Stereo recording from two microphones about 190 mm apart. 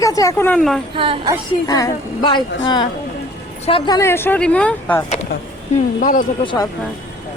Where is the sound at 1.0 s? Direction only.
30° right (ahead or behind).